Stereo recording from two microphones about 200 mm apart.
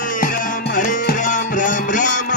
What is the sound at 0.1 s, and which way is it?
Music, 40° left (ahead or behind).